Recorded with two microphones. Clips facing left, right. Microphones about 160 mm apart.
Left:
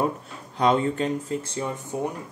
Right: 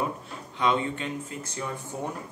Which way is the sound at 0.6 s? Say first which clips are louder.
Left 5 dB; 40° left (ahead or behind).